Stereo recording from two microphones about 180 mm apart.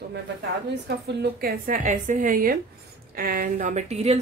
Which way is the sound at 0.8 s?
65° right (ahead or behind).